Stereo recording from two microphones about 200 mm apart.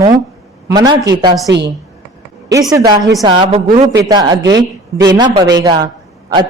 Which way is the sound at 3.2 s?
25° right (ahead or behind).